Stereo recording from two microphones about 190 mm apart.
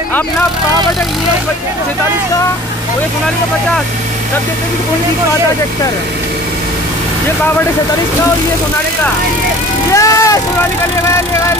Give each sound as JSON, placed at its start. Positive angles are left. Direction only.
{"t": 9.9, "sound": "speech", "side_deg": 15}